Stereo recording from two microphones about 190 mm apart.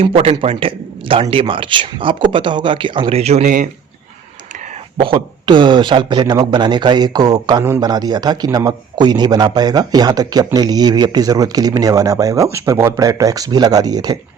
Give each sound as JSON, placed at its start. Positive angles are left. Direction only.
{"t": 0.0, "sound": "a man's voice", "side_deg": -30}
{"t": 4.9, "sound": "a man's voice", "side_deg": -25}